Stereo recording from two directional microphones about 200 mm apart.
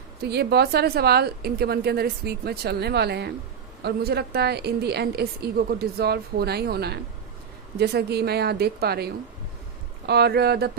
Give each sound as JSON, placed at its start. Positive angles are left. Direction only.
{"t": 0.2, "sound": "a woman's voice", "side_deg": -55}
{"t": 10.1, "sound": "a woman's voice", "side_deg": -55}